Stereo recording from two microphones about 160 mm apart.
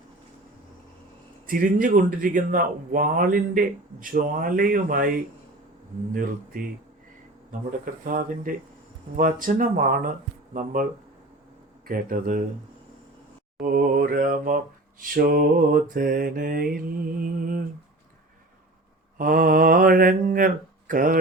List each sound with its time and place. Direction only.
1.5 s speech: 60° right (ahead or behind)
8.0 s speech: 60° right (ahead or behind)
11.9 s speech: 65° right (ahead or behind)
13.6 s speech: 65° right (ahead or behind)
19.1 s speech: 60° right (ahead or behind)